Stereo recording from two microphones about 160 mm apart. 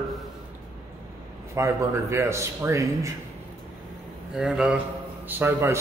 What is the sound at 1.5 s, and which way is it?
Speech, 15° right (ahead or behind).